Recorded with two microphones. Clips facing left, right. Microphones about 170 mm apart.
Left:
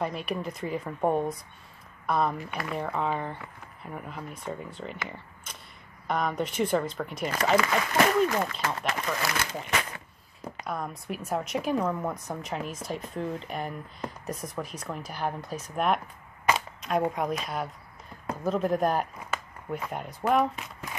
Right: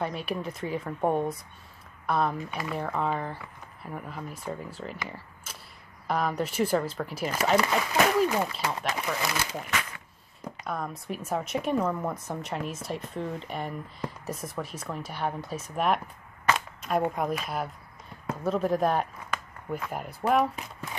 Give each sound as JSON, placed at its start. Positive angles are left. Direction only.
{"t": 0.0, "sound": "a woman's voice", "side_deg": 0}
{"t": 9.7, "sound": "a sound", "side_deg": 35}
{"t": 10.6, "sound": "a woman's voice", "side_deg": 0}